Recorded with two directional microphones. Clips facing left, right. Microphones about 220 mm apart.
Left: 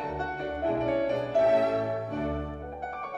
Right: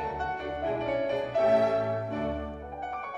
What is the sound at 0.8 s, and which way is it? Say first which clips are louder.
Music: even; centre (ahead or behind).